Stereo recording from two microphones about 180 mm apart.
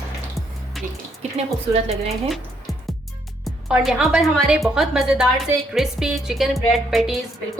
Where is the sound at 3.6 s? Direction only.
5° right (ahead or behind).